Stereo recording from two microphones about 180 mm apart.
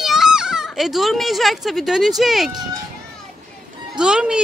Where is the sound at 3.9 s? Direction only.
5° right (ahead or behind).